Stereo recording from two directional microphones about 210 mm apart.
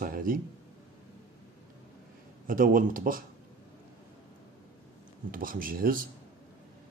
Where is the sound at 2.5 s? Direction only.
40° right (ahead or behind).